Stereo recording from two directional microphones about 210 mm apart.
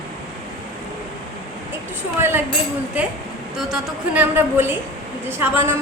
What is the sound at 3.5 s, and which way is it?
A woman's voice, 5° right (ahead or behind).